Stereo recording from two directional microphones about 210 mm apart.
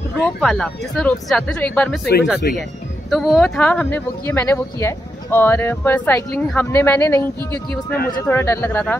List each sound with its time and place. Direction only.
0.2 s speech: 5° left (ahead or behind)
2.4 s speech: 45° left (ahead or behind)
3.1 s speech: centre (ahead or behind)